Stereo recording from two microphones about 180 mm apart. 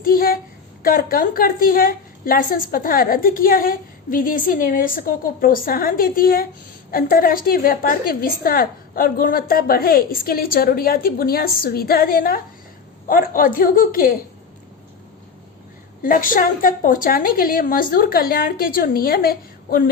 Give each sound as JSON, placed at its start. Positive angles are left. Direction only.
{"t": 0.0, "sound": "a woman's voice", "side_deg": 55}
{"t": 16.0, "sound": "a woman's voice", "side_deg": 50}